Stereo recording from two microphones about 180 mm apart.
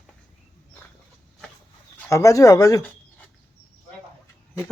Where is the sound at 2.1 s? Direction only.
20° left (ahead or behind).